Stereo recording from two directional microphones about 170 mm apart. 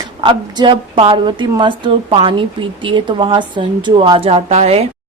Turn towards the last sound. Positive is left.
turn(degrees=-35)  # may be behind; listen again after turning